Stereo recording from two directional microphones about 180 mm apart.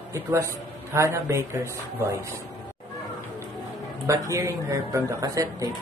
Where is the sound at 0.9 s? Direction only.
15° right (ahead or behind).